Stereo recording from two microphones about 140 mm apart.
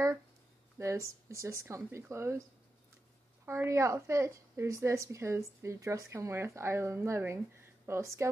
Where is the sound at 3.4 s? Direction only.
15° right (ahead or behind).